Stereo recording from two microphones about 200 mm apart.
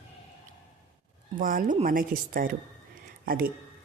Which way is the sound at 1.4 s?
45° right (ahead or behind).